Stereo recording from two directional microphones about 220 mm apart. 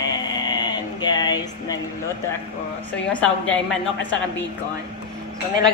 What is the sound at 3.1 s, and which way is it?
Speech, 5° left (ahead or behind).